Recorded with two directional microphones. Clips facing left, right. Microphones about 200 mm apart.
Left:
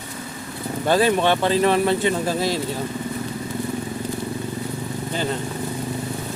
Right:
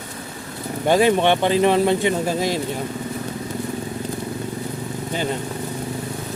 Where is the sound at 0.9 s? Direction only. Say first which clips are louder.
Right 2 dB; 15° right (ahead or behind).